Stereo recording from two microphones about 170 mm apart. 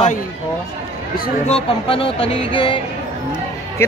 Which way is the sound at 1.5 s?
35° left (ahead or behind).